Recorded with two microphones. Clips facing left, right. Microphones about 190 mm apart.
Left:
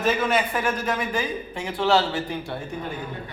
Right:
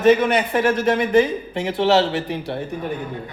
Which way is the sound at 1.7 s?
25° right (ahead or behind).